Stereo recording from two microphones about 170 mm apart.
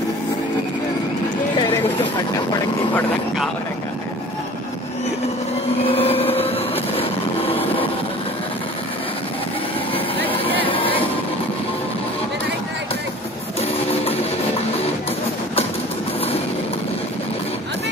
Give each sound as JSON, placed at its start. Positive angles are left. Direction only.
{"t": 5.9, "sound": "vehicle", "side_deg": 35}
{"t": 9.9, "sound": "vehicle", "side_deg": 35}
{"t": 10.5, "sound": "a sound", "side_deg": 30}